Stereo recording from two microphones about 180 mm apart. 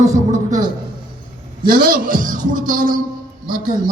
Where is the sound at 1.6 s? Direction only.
50° right (ahead or behind).